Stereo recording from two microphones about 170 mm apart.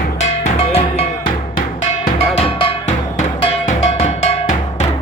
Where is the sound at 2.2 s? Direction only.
35° left (ahead or behind).